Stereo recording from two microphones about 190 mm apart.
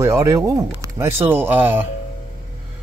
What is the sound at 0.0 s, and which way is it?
Speech, 15° right (ahead or behind).